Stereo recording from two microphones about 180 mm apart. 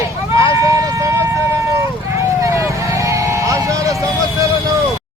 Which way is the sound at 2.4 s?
15° right (ahead or behind).